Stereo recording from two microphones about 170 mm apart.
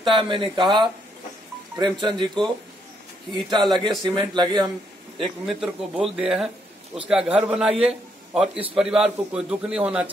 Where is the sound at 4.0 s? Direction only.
30° right (ahead or behind).